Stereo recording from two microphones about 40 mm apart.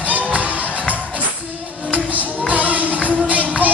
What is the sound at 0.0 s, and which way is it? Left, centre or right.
Music, right.